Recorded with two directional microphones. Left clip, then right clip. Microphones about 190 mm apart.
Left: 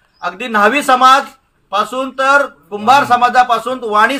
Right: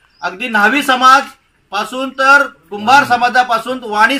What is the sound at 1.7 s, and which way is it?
A man's voice, centre (ahead or behind).